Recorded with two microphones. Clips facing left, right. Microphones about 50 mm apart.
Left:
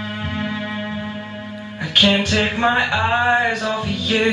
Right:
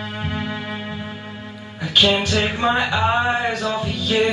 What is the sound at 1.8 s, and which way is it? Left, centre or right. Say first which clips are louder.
Music: left 1 dB; left.